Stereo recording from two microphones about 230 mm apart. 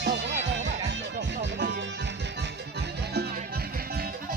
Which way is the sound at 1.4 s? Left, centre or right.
Right.